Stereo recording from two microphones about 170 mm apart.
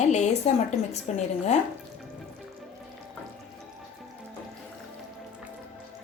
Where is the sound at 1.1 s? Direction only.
45° left (ahead or behind).